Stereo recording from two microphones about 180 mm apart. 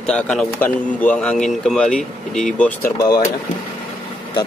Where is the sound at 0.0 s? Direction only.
5° left (ahead or behind).